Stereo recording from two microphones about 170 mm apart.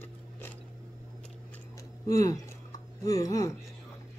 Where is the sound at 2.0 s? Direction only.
20° left (ahead or behind).